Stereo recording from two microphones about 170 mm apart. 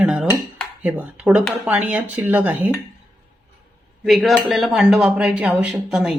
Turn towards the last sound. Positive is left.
turn(degrees=-5)  # may be behind; listen again after turning